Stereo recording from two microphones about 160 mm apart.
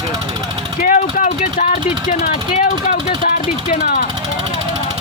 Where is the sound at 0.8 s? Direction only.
55° left (ahead or behind).